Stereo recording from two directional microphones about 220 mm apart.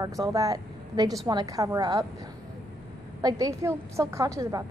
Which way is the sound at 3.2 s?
15° right (ahead or behind).